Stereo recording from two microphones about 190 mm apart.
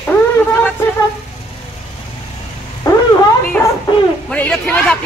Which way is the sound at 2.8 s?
20° left (ahead or behind).